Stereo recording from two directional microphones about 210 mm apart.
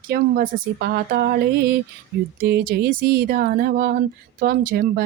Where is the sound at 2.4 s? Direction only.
45° right (ahead or behind).